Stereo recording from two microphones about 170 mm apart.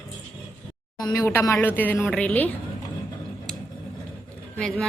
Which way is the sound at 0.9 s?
20° left (ahead or behind).